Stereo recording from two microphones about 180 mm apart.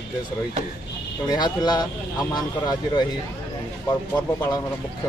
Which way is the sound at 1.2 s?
25° left (ahead or behind).